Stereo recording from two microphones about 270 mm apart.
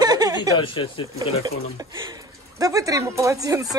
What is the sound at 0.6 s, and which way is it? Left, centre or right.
Speech, centre.